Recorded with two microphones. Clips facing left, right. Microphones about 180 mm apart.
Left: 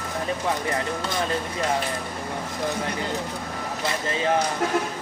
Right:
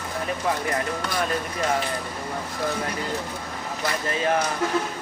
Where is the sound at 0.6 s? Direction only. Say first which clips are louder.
Even; 25° left (ahead or behind).